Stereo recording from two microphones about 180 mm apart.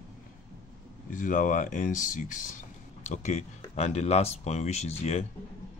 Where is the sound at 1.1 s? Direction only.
45° left (ahead or behind).